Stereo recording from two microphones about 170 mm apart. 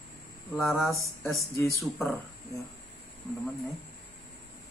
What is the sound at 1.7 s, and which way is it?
Speech, centre (ahead or behind).